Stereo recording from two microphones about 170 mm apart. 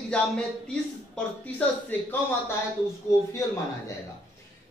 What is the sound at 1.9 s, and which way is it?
Speech, 10° left (ahead or behind).